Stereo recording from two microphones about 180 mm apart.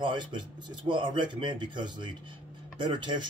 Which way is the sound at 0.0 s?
25° right (ahead or behind).